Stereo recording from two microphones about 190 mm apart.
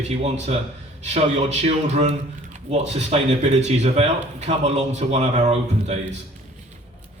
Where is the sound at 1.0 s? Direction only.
35° right (ahead or behind).